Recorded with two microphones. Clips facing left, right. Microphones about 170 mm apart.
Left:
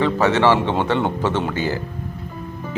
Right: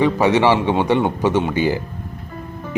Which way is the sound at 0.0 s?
15° right (ahead or behind).